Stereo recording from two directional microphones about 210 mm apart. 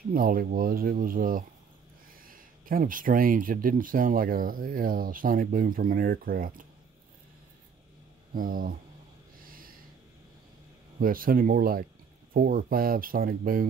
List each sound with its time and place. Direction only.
0.1 s speech: 45° right (ahead or behind)
8.4 s speech: 40° right (ahead or behind)
9.4 s snort: 45° right (ahead or behind)
11.0 s speech: 45° right (ahead or behind)